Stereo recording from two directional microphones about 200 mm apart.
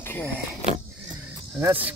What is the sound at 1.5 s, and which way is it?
Speech, 10° right (ahead or behind).